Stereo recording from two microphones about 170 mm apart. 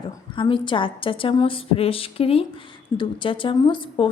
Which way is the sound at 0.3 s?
30° left (ahead or behind).